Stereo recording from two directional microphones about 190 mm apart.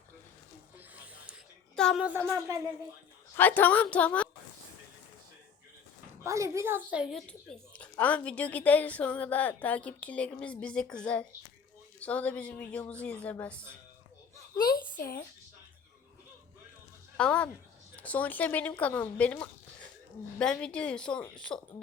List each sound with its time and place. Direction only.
0.8 s a sound: 10° right (ahead or behind)
1.7 s speech: 5° left (ahead or behind); by 2.6 s 15° right (ahead or behind)
3.3 s a woman's voice: 10° left (ahead or behind)
6.2 s a woman's voice: 15° right (ahead or behind); by 13.7 s 5° left (ahead or behind)
17.2 s a woman's voice: 5° left (ahead or behind)
21.5 s speech: 20° left (ahead or behind)